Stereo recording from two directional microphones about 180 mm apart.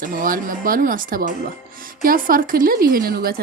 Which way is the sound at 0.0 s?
50° right (ahead or behind).